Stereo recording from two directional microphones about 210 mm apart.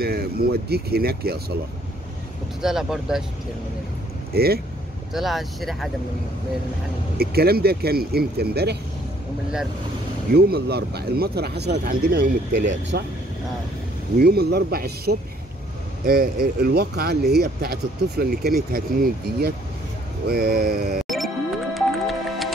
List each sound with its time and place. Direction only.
0.0 s speech: 45° right (ahead or behind)
2.6 s speech: centre (ahead or behind)
4.3 s speech: 50° right (ahead or behind)
5.1 s speech: centre (ahead or behind)
7.2 s speech: 45° right (ahead or behind)
10.3 s speech: 50° right (ahead or behind)
14.1 s speech: 50° right (ahead or behind)
21.7 s music: centre (ahead or behind)